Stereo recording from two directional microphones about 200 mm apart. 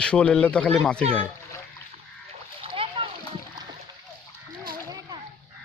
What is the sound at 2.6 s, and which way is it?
Splash, 25° right (ahead or behind).